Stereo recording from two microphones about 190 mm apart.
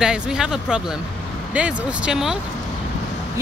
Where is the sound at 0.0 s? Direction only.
5° right (ahead or behind).